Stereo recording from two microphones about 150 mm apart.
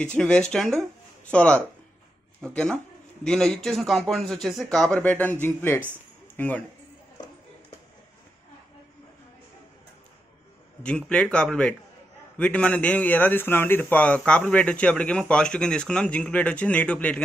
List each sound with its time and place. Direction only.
0.0 s a man's voice: 5° left (ahead or behind)
10.8 s a man's voice: 5° left (ahead or behind)